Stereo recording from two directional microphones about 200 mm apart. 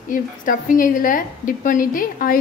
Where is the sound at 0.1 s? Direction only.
40° left (ahead or behind).